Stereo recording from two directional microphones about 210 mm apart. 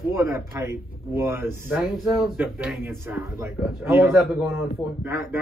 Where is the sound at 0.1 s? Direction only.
10° right (ahead or behind).